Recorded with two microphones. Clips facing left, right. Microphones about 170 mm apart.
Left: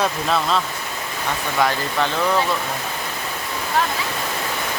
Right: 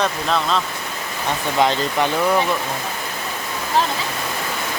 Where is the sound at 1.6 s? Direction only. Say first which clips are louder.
Right 2 dB; 20° right (ahead or behind).